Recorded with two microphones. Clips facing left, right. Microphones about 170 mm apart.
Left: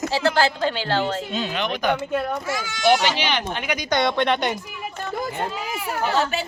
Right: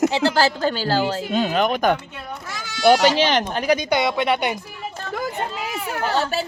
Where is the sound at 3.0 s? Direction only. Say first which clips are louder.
Right 6 dB; 40° right (ahead or behind).